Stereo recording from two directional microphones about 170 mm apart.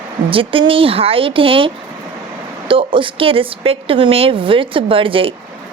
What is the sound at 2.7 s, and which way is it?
Speech, 30° right (ahead or behind).